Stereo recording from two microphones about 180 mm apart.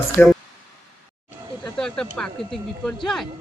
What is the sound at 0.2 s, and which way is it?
Speech, 10° left (ahead or behind).